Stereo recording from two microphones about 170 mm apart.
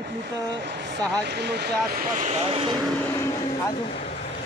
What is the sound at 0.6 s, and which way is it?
Speech, 80° right.